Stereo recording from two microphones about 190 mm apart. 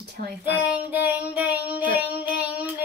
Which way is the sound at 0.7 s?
10° right (ahead or behind).